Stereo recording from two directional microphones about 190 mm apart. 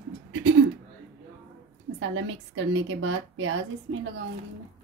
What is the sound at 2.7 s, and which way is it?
A woman's voice, 90° right.